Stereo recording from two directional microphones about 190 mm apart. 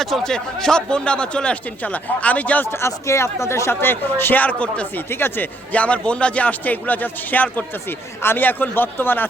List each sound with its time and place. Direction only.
0.0 s speech: centre (ahead or behind)